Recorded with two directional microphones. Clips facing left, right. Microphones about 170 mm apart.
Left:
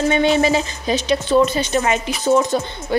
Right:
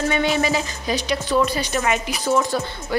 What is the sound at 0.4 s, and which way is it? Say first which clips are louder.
Speech: left 4 dB; 25° left (ahead or behind).